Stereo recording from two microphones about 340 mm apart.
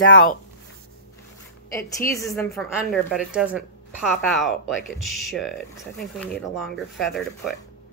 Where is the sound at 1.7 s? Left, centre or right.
Centre.